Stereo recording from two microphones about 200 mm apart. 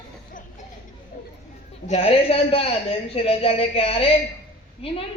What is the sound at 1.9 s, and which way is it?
A man's voice, 30° left (ahead or behind).